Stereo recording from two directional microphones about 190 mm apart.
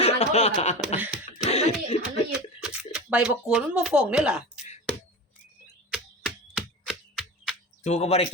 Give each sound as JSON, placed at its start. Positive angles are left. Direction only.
{"t": 0.0, "sound": "speech", "side_deg": 35}
{"t": 2.6, "sound": "speech", "side_deg": -5}
{"t": 5.9, "sound": "a sound", "side_deg": 0}
{"t": 7.8, "sound": "speech", "side_deg": 35}